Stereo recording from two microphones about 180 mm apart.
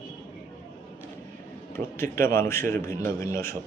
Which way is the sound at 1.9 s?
15° left (ahead or behind).